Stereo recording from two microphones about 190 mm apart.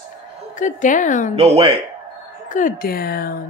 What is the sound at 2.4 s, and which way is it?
Speech, 45° left (ahead or behind).